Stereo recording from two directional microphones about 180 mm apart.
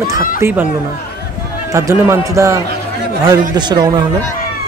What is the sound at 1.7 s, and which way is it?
A man's voice, 15° right (ahead or behind).